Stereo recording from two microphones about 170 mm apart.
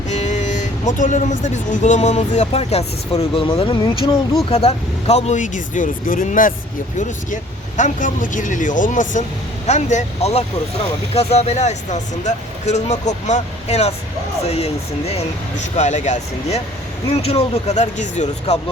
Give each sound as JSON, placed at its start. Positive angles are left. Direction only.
{"t": 0.1, "sound": "speech", "side_deg": 45}
{"t": 7.8, "sound": "speech", "side_deg": 50}